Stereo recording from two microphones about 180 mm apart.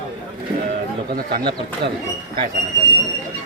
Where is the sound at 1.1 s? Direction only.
60° right (ahead or behind).